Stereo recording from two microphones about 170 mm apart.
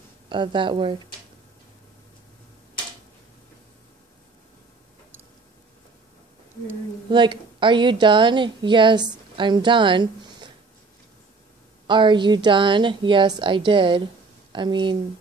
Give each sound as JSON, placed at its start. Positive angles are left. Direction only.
{"t": 0.3, "sound": "a woman's voice", "side_deg": -25}
{"t": 7.1, "sound": "a woman's voice", "side_deg": -30}
{"t": 11.9, "sound": "a woman's voice", "side_deg": -30}